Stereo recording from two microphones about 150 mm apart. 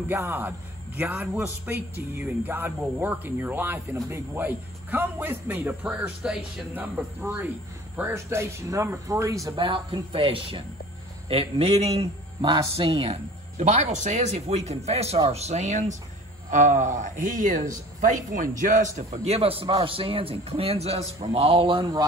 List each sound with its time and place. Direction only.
0.1 s a man's voice: 15° right (ahead or behind); by 22.0 s 30° right (ahead or behind)